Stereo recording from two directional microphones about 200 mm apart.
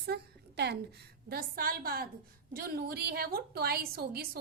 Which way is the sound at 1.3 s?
45° right (ahead or behind).